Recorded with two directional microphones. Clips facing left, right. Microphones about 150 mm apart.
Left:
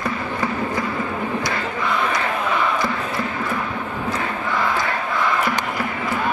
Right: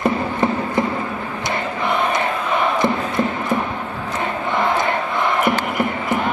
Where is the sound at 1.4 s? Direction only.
20° right (ahead or behind).